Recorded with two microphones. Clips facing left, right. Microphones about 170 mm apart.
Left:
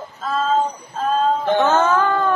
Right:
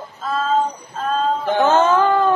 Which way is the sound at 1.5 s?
20° right (ahead or behind).